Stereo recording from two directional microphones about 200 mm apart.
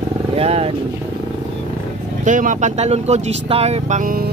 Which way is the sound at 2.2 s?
40° right (ahead or behind).